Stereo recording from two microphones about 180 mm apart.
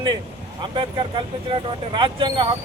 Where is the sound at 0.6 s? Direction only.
25° right (ahead or behind).